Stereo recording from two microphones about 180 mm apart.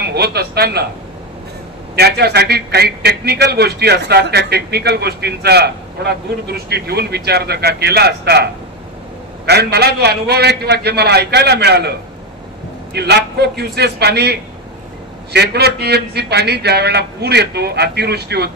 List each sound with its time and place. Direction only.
0.0 s a man's voice: 65° right (ahead or behind)
2.0 s a man's voice: 65° right (ahead or behind)
9.5 s a man's voice: 65° right (ahead or behind)